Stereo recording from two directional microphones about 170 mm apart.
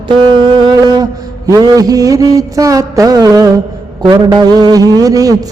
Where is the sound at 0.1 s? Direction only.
25° right (ahead or behind).